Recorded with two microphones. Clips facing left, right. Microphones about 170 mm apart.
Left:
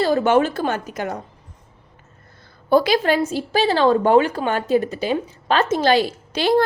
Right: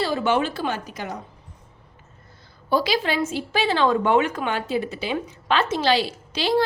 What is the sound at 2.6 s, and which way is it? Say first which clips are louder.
A woman's voice: left 6 dB; 50° left (ahead or behind).